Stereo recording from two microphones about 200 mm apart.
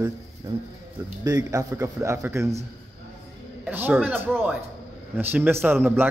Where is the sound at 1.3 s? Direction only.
15° right (ahead or behind).